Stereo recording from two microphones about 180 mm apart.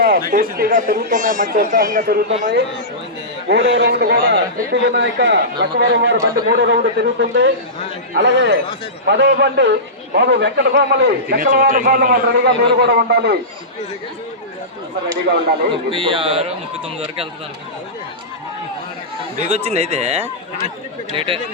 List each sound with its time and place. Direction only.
0.0 s speech: 55° right (ahead or behind)
3.5 s a man's voice: 75° right (ahead or behind)
8.1 s a man's voice: 85° right
9.0 s a man's voice: 70° right (ahead or behind)
15.9 s a man's voice: 30° right (ahead or behind)
19.5 s speech: 35° right (ahead or behind)